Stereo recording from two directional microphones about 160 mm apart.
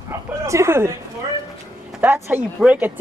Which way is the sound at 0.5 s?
15° right (ahead or behind).